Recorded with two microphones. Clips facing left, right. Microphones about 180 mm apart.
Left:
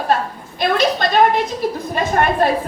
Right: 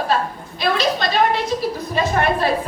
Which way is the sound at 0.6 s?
50° left (ahead or behind).